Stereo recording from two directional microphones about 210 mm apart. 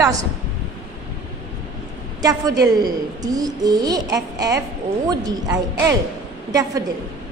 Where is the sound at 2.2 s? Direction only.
15° right (ahead or behind).